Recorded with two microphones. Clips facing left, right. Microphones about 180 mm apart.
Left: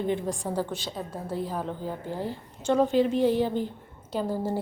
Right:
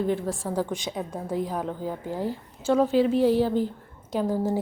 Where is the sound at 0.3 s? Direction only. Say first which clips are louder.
Right 1 dB; 15° left (ahead or behind).